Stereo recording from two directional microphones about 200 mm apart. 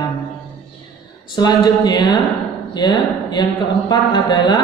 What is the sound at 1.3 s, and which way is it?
A man's voice, 20° left (ahead or behind).